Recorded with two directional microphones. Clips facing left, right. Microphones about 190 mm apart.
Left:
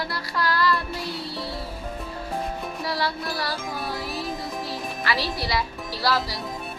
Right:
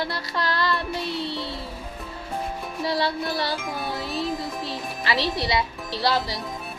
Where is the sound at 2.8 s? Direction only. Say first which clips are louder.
Right 4 dB; 25° right (ahead or behind).